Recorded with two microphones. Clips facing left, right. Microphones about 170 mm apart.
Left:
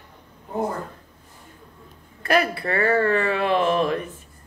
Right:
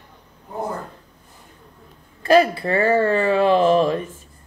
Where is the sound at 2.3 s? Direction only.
30° right (ahead or behind).